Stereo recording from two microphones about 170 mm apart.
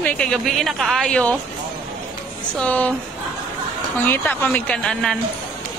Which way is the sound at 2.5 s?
10° left (ahead or behind).